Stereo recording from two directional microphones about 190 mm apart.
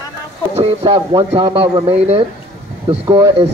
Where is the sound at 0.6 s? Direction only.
30° right (ahead or behind).